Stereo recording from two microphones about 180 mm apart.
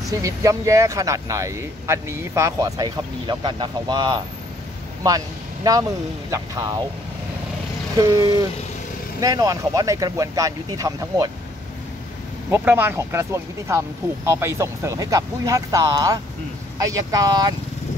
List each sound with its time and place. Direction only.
0.2 s speech: 20° right (ahead or behind)
8.0 s speech: 20° right (ahead or behind)
12.4 s speech: 10° right (ahead or behind)